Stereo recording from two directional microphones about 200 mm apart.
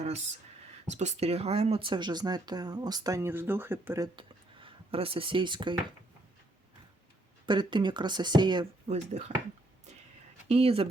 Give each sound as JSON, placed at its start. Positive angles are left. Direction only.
{"t": 0.9, "sound": "speech", "side_deg": -35}
{"t": 7.4, "sound": "speech", "side_deg": -25}
{"t": 8.9, "sound": "speech", "side_deg": -35}
{"t": 10.5, "sound": "speech", "side_deg": -30}